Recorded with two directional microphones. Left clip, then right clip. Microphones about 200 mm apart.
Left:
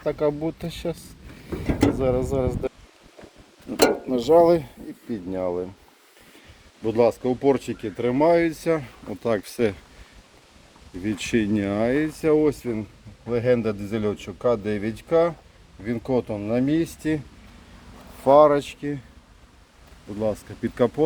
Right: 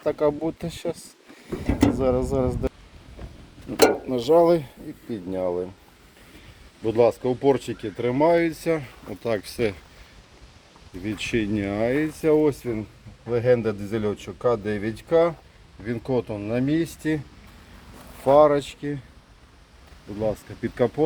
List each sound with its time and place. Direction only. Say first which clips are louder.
0.0 s a man's voice: right 1 dB; 10° right (ahead or behind)
3.7 s speech: right 1 dB; 15° left (ahead or behind)
6.8 s speech: even; centre (ahead or behind); by 9.7 s 30° left (ahead or behind)
11.0 s a man's voice: left 2 dB; 30° left (ahead or behind); by 15.4 s centre (ahead or behind)
16.0 s speech: left 1 dB; 10° left (ahead or behind)
18.2 s speech: left 1 dB; 10° left (ahead or behind)
20.1 s speech: even; 10° left (ahead or behind)